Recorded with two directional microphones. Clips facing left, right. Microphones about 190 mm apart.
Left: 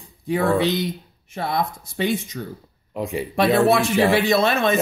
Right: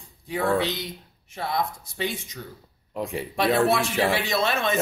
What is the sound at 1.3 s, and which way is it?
Speech, 60° left (ahead or behind).